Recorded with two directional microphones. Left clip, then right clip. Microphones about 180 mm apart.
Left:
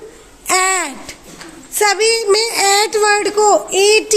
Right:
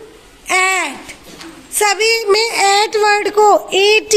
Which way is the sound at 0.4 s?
45° left (ahead or behind).